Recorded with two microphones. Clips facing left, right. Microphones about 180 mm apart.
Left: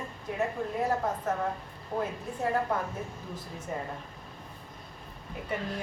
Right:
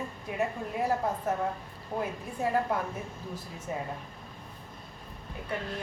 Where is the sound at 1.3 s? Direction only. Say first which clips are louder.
Right 1 dB; 10° right (ahead or behind).